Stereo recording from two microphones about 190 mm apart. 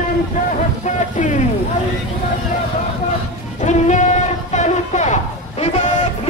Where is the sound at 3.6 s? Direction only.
40° left (ahead or behind).